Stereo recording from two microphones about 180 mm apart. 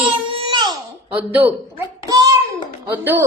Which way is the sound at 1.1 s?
10° right (ahead or behind).